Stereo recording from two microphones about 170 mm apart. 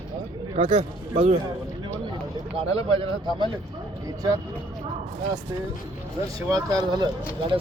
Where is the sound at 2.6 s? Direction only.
35° right (ahead or behind).